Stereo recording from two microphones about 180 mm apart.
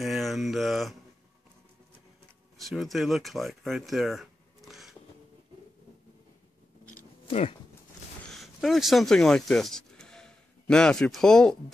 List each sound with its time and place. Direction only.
0.0 s mantra: centre (ahead or behind)
2.5 s speech: centre (ahead or behind)
7.2 s speech: 35° left (ahead or behind)
8.3 s speech: centre (ahead or behind)